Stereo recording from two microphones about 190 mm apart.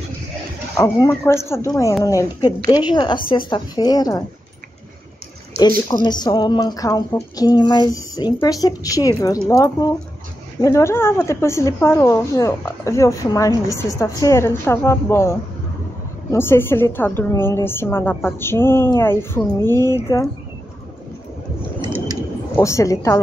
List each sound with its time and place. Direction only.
0.7 s a woman's voice: 15° left (ahead or behind)
5.6 s a woman's voice: 20° left (ahead or behind)
22.6 s a woman's voice: 15° left (ahead or behind)